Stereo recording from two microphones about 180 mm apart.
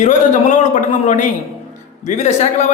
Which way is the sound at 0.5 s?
40° left (ahead or behind).